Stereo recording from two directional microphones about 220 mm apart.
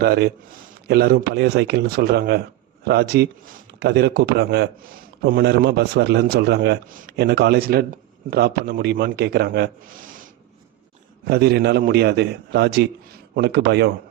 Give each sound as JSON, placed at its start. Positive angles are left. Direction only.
{"t": 0.0, "sound": "a man's voice", "side_deg": -45}
{"t": 11.3, "sound": "a man's voice", "side_deg": -45}